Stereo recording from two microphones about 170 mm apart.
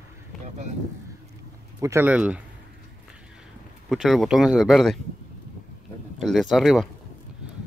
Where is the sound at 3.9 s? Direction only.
Centre (ahead or behind).